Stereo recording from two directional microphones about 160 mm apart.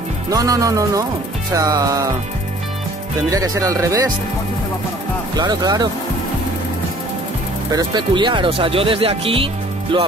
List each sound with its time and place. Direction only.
0.3 s speech: 20° right (ahead or behind)
3.3 s speech: 20° right (ahead or behind)
5.3 s speech: 25° right (ahead or behind)
7.7 s speech: 30° right (ahead or behind)